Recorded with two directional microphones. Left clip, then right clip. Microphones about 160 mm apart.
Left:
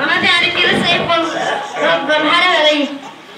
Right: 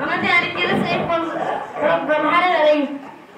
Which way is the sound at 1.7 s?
10° right (ahead or behind).